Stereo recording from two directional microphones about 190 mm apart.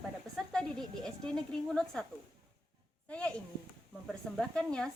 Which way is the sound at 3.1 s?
5° left (ahead or behind).